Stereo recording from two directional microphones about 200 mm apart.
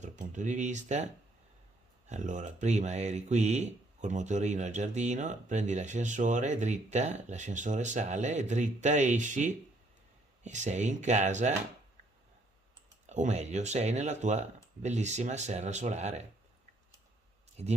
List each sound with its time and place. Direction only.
0.0 s speech: 35° right (ahead or behind)
13.1 s speech: 35° right (ahead or behind)
17.6 s speech: 30° right (ahead or behind)